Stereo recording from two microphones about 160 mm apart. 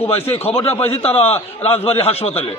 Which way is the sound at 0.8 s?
40° left (ahead or behind).